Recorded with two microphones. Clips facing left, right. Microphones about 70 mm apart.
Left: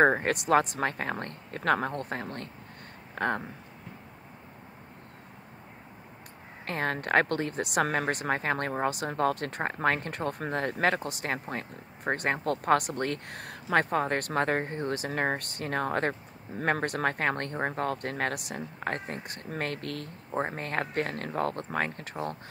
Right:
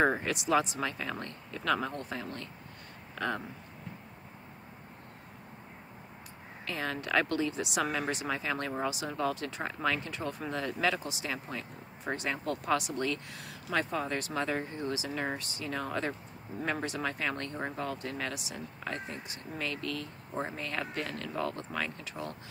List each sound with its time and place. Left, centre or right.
0.0 s speech: left
6.6 s speech: left